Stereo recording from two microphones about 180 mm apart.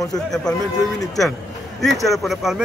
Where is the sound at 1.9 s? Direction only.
Centre (ahead or behind).